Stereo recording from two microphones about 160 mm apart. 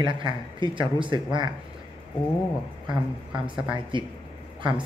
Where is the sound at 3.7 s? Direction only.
30° right (ahead or behind).